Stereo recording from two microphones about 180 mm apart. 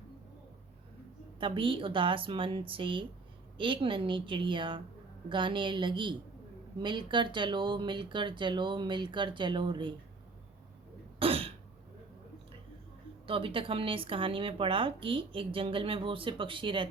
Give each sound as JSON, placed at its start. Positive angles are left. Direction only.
{"t": 1.4, "sound": "speech", "side_deg": -30}
{"t": 11.2, "sound": "cough", "side_deg": -30}
{"t": 13.2, "sound": "speech", "side_deg": -30}